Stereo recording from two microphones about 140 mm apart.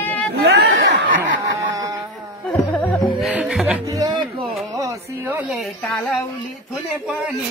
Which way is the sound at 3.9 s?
30° right (ahead or behind).